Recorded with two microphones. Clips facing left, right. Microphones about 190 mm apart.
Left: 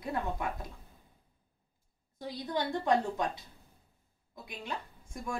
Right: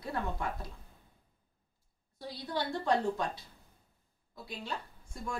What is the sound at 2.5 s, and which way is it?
Speech, 15° left (ahead or behind).